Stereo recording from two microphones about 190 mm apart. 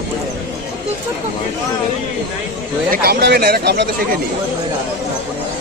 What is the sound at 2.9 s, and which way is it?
Speech, 55° right (ahead or behind).